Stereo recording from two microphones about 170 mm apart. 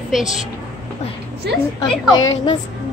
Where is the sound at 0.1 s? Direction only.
Centre (ahead or behind).